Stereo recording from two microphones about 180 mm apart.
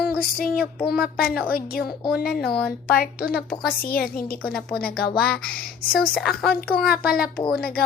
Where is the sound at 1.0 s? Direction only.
55° left (ahead or behind).